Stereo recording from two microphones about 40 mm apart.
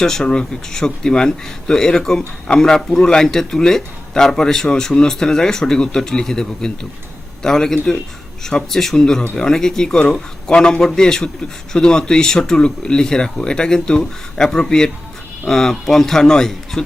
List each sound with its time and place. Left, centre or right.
0.0 s speech: centre